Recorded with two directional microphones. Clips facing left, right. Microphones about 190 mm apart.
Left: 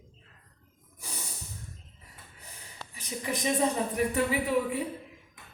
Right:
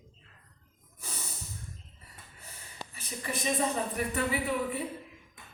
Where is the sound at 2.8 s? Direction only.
10° right (ahead or behind).